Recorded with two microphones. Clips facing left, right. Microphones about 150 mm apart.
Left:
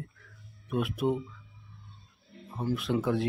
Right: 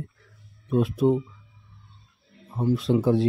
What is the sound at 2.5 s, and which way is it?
Speech, 25° right (ahead or behind).